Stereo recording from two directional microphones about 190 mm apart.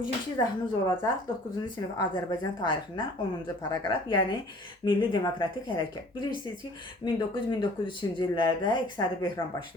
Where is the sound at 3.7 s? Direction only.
25° left (ahead or behind).